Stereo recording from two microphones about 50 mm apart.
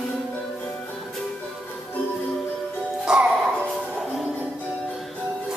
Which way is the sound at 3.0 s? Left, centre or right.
Centre.